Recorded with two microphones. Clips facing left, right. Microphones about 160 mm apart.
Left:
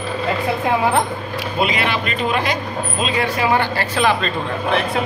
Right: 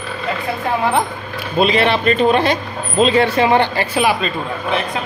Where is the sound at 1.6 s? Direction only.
25° right (ahead or behind).